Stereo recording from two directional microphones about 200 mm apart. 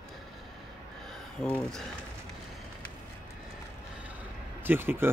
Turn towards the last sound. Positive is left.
turn(degrees=-10)  # may be behind; listen again after turning